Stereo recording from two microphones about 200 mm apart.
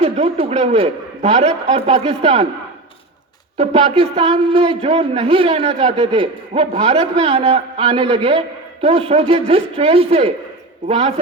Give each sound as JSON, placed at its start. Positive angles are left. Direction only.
{"t": 0.0, "sound": "a man's voice", "side_deg": -30}
{"t": 3.6, "sound": "a man's voice", "side_deg": -30}